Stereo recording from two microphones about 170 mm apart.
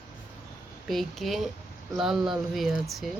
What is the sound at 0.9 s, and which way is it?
Speech, centre (ahead or behind).